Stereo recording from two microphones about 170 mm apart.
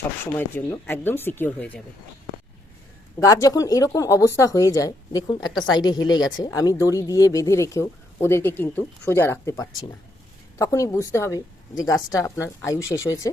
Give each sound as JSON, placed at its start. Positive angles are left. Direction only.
{"t": 0.3, "sound": "speech", "side_deg": 15}
{"t": 3.2, "sound": "a woman's voice", "side_deg": 20}